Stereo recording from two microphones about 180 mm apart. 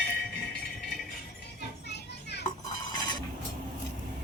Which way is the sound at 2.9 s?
25° left (ahead or behind).